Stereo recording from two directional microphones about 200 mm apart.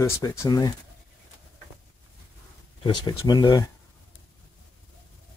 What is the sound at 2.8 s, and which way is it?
Speech, 20° left (ahead or behind).